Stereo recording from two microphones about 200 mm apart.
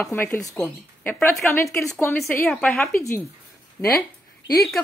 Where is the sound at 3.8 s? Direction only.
15° left (ahead or behind).